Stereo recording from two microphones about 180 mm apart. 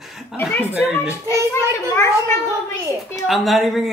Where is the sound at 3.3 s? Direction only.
Centre (ahead or behind).